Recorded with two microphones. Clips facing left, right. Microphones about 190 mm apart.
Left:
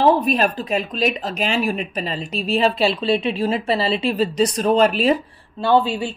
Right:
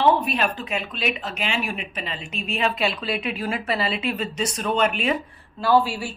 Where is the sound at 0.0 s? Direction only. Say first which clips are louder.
Left 4 dB; 40° left (ahead or behind).